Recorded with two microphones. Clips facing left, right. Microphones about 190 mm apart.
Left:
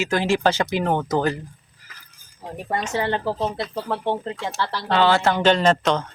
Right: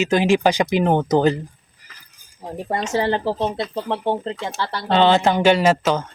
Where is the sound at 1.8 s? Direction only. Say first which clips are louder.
Even; 15° right (ahead or behind).